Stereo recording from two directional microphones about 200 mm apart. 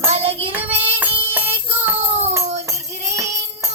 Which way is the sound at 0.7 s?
30° right (ahead or behind).